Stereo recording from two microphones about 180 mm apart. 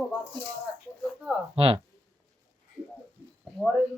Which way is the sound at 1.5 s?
30° right (ahead or behind).